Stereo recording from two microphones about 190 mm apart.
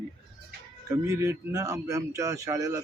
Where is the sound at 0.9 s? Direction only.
15° right (ahead or behind).